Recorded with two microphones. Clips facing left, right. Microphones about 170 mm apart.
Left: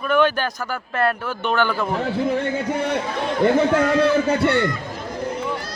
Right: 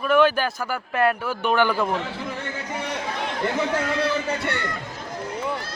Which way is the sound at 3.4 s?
55° left (ahead or behind).